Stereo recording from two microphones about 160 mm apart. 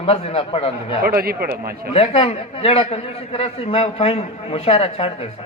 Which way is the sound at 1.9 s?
35° left (ahead or behind).